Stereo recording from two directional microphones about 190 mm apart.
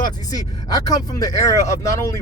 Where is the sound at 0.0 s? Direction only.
20° left (ahead or behind).